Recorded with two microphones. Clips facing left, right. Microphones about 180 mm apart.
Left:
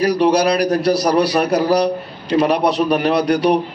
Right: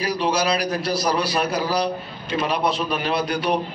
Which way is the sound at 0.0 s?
60° left (ahead or behind).